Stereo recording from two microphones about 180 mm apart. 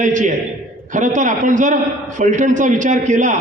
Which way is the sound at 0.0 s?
45° right (ahead or behind).